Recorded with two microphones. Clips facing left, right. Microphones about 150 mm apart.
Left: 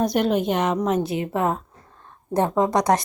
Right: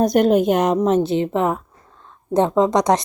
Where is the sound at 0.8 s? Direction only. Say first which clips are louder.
Right 5 dB; 25° right (ahead or behind).